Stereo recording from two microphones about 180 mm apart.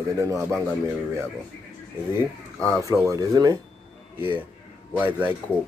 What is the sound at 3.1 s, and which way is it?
Speech, 20° right (ahead or behind).